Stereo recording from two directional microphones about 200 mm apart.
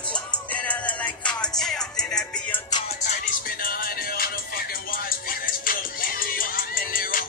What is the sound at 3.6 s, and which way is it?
Music, 45° left (ahead or behind).